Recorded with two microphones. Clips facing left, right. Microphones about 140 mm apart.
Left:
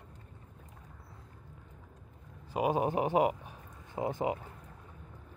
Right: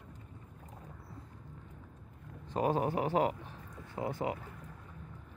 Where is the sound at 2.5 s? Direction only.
15° left (ahead or behind).